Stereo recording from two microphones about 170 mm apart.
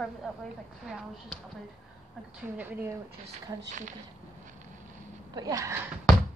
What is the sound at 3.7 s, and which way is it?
Speech, 45° right (ahead or behind).